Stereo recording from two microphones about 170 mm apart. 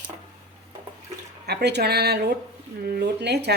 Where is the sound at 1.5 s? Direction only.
75° right (ahead or behind).